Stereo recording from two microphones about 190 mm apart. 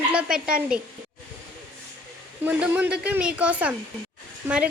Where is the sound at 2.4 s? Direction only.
10° right (ahead or behind).